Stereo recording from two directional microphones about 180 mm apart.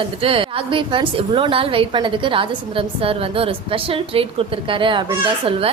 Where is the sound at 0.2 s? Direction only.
30° right (ahead or behind).